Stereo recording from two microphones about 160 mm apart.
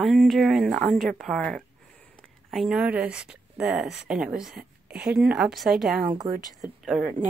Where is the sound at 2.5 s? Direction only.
Centre (ahead or behind).